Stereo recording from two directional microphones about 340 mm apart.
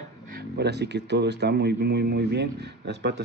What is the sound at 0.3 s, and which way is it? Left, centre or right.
Speech, right.